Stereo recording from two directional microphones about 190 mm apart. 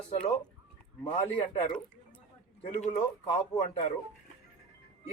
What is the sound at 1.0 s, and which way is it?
Speech, 35° left (ahead or behind).